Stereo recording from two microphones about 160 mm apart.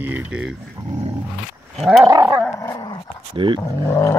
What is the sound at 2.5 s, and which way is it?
Dog, 20° left (ahead or behind).